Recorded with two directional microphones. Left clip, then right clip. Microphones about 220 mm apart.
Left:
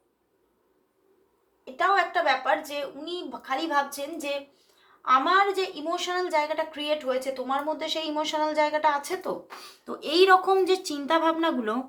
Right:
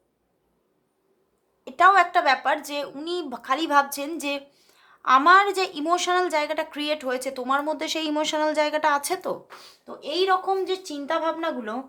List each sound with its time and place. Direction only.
1.6 s a woman's voice: 45° right (ahead or behind)
9.8 s speech: 5° left (ahead or behind)